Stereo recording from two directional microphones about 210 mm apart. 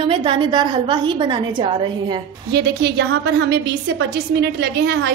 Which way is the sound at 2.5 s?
55° right (ahead or behind).